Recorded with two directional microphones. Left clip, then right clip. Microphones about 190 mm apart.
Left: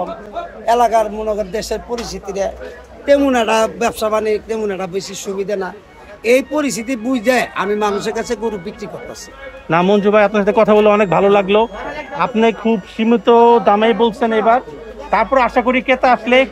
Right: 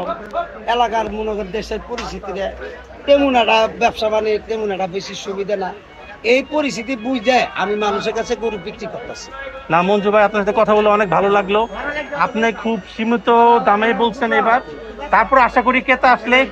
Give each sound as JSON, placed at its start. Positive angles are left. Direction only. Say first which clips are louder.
{"t": 0.7, "sound": "a man's voice", "louder": "left 5 dB", "side_deg": 75}
{"t": 3.1, "sound": "a man's voice", "louder": "even", "side_deg": 65}
{"t": 9.7, "sound": "speech", "louder": "left 2 dB", "side_deg": 65}